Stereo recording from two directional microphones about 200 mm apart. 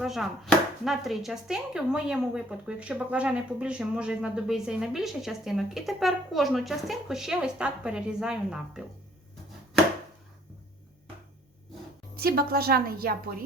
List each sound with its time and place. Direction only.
0.0 s chopping: centre (ahead or behind)
12.1 s a woman's voice: 50° right (ahead or behind)